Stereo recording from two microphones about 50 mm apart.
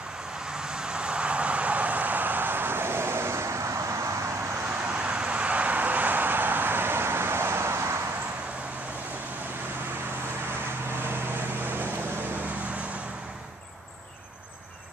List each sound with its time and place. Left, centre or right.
0.7 s vehicle: centre; by 4.1 s right
4.6 s vehicle: right